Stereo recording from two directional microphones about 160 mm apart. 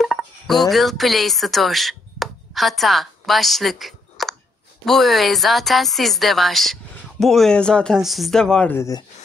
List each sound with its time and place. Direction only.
0.0 s speech: centre (ahead or behind); by 9.0 s 15° left (ahead or behind)